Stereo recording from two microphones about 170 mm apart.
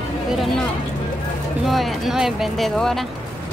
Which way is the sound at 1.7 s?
Centre (ahead or behind).